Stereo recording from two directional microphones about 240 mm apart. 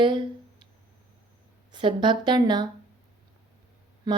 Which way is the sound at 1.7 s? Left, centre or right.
Centre.